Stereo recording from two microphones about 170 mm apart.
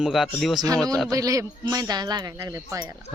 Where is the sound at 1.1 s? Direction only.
20° right (ahead or behind).